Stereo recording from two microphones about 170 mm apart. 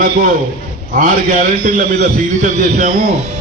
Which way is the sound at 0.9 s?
50° right (ahead or behind).